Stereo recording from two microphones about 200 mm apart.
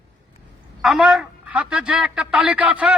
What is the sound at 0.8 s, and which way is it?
Speech, centre (ahead or behind).